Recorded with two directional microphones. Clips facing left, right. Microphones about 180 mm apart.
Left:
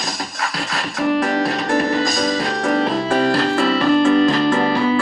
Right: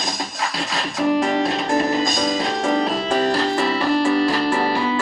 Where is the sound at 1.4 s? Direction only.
20° right (ahead or behind).